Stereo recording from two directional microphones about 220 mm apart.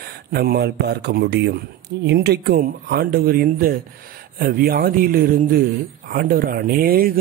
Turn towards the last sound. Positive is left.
turn(degrees=-40)  # may be behind; listen again after turning